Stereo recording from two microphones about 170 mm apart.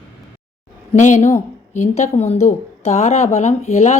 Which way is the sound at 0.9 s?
45° left (ahead or behind).